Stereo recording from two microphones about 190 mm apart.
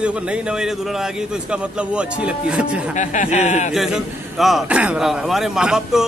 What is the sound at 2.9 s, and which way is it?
Speech, 40° left (ahead or behind).